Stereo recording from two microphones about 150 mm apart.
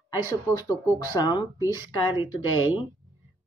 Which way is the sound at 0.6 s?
25° left (ahead or behind).